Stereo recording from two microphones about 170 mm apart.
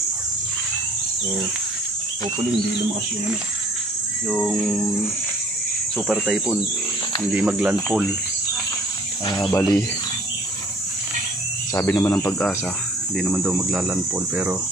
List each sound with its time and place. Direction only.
4.3 s speech: 5° right (ahead or behind)
5.9 s speech: 5° right (ahead or behind)
9.2 s speech: 25° left (ahead or behind)
11.7 s speech: 15° left (ahead or behind)
13.2 s speech: centre (ahead or behind)